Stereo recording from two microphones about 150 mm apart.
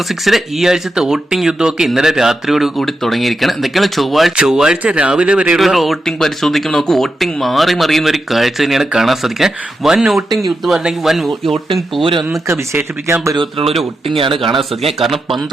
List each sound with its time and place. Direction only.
0.1 s speech: centre (ahead or behind)
12.5 s speech: 15° right (ahead or behind)
13.3 s speech: 35° right (ahead or behind)
14.9 s speech: centre (ahead or behind)